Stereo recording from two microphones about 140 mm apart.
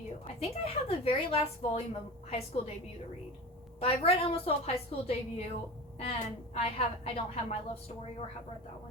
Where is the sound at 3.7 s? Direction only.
45° left (ahead or behind).